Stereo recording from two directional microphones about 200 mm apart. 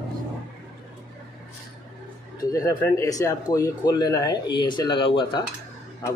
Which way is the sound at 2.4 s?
15° left (ahead or behind).